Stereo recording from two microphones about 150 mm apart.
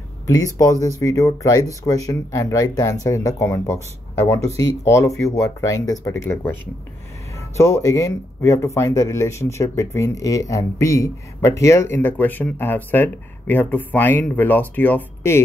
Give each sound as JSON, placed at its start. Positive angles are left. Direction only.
{"t": 0.6, "sound": "speech", "side_deg": 20}